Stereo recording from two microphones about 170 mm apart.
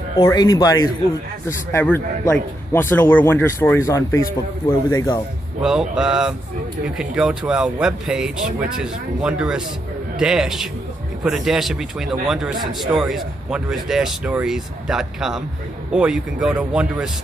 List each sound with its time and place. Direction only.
0.2 s speech: 25° left (ahead or behind)
5.6 s speech: 5° right (ahead or behind)